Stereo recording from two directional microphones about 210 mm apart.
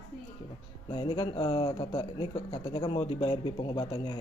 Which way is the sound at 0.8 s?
20° left (ahead or behind).